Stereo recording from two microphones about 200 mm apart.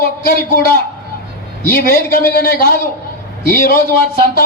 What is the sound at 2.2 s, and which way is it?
A man's voice, 50° left (ahead or behind).